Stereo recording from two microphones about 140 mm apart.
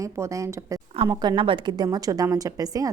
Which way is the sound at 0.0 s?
20° right (ahead or behind).